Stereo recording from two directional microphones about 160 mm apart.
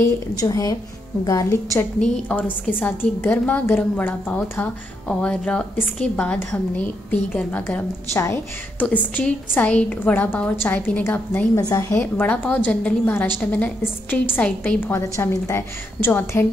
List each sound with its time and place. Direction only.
0.0 s a woman's voice: 25° left (ahead or behind)
2.0 s a woman's voice: 10° left (ahead or behind)